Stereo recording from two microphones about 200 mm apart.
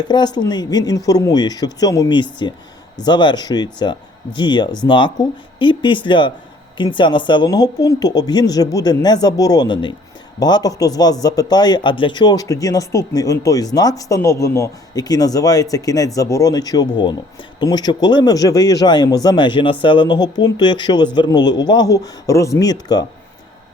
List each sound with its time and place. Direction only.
0.0 s speech: 20° left (ahead or behind)